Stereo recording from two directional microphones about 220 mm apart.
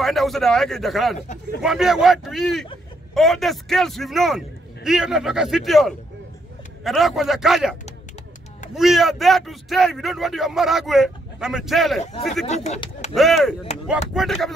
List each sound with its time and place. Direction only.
0.0 s speech: centre (ahead or behind)
8.7 s speech: centre (ahead or behind)
12.4 s speech: 30° left (ahead or behind)
13.1 s speech: centre (ahead or behind)